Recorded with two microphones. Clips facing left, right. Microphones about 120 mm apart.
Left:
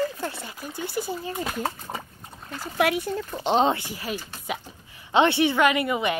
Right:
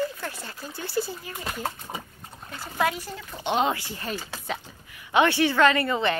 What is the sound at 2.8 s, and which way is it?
Speech, 65° left (ahead or behind).